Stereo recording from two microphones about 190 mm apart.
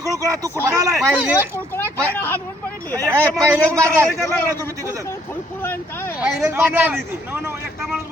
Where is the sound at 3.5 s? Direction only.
15° right (ahead or behind).